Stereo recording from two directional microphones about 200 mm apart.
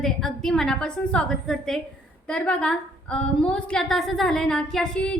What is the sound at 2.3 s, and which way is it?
A woman's voice, 5° left (ahead or behind).